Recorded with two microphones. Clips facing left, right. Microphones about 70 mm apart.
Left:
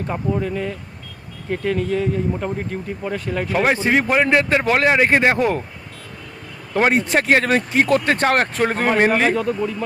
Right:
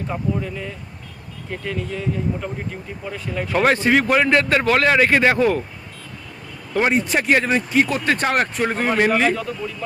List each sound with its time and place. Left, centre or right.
0.4 s speech: left
3.5 s a man's voice: centre; by 5.6 s left
7.1 s speech: left
8.0 s speech: left
8.3 s speech: left